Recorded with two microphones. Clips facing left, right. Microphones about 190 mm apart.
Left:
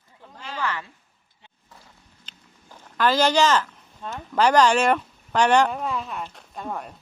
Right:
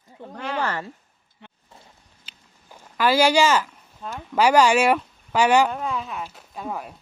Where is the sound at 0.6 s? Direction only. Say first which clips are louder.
Right 2 dB; 45° right (ahead or behind).